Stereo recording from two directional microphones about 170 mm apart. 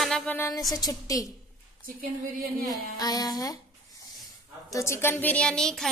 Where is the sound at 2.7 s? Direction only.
20° left (ahead or behind).